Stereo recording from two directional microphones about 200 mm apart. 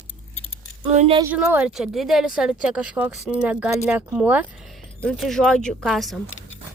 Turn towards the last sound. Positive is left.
turn(degrees=0)  # may be behind; listen again after turning